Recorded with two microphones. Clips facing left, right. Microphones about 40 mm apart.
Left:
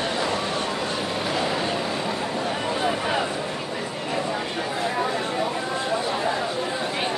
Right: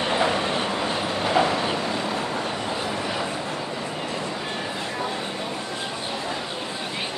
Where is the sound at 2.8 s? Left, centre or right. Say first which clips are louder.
Left 4 dB; left.